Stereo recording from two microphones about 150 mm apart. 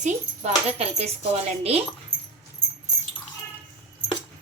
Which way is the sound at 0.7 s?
45° right (ahead or behind).